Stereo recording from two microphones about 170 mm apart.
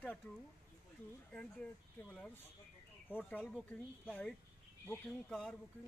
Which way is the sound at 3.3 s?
5° left (ahead or behind).